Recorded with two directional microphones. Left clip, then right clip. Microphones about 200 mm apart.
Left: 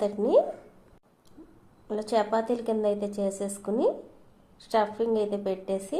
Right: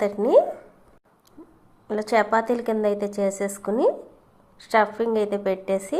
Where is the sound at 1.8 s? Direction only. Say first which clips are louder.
Right 5 dB; 20° right (ahead or behind).